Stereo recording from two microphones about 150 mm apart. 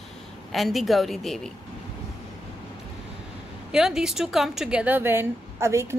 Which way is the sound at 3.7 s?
5° right (ahead or behind).